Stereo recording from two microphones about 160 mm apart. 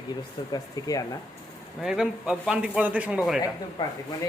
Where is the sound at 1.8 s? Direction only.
5° right (ahead or behind).